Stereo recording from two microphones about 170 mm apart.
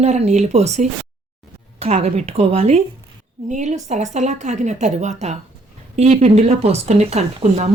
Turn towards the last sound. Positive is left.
turn(degrees=-40)  # may be behind; listen again after turning